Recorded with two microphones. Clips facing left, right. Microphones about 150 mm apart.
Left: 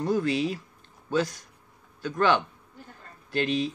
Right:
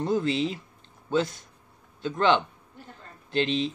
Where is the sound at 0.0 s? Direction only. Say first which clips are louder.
Even; 25° right (ahead or behind).